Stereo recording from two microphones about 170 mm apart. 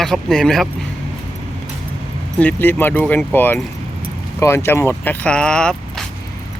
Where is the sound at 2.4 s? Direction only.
10° left (ahead or behind).